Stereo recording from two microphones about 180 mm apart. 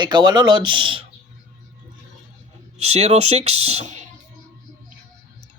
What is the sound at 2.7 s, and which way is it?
Speech, 35° right (ahead or behind).